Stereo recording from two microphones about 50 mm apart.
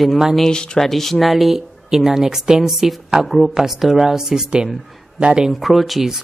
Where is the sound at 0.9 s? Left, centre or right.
Centre.